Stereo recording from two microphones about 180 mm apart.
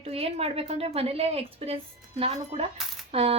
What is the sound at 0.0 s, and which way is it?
A woman's voice, 35° right (ahead or behind).